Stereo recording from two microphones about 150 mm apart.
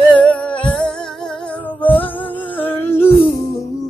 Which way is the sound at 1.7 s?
10° left (ahead or behind).